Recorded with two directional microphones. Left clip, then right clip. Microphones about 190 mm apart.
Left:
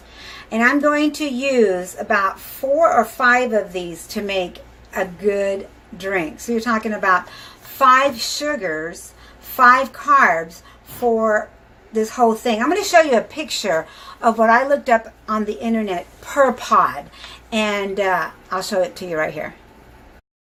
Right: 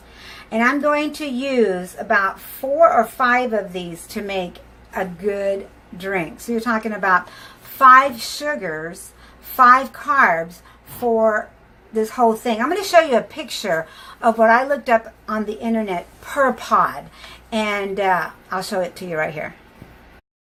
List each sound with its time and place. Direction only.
0.2 s a woman's voice: centre (ahead or behind)